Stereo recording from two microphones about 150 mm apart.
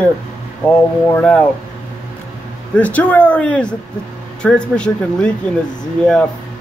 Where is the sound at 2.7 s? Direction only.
10° left (ahead or behind).